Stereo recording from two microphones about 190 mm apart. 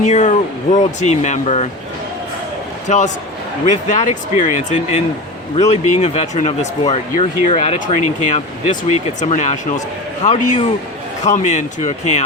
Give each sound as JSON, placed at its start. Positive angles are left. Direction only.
{"t": 0.0, "sound": "speech", "side_deg": 40}
{"t": 2.9, "sound": "speech", "side_deg": 40}